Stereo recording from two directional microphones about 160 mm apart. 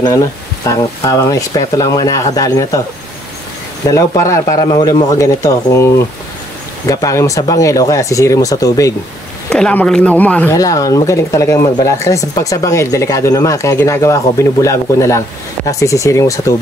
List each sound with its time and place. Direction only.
0.7 s speech: 20° left (ahead or behind)
3.9 s speech: 20° left (ahead or behind)
9.5 s speech: 5° left (ahead or behind)